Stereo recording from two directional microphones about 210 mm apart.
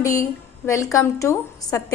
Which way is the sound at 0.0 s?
15° left (ahead or behind).